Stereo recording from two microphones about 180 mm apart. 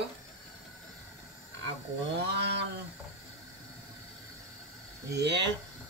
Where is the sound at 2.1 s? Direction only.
70° right (ahead or behind).